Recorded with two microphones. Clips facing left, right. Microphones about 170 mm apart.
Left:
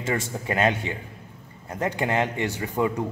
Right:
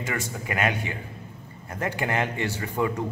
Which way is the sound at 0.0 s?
25° left (ahead or behind).